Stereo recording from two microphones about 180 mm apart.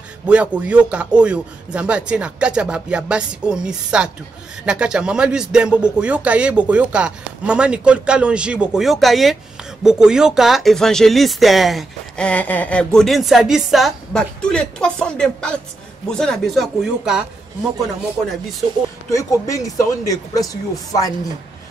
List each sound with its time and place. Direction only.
0.3 s speech: 5° right (ahead or behind)
19.0 s speech: 20° left (ahead or behind)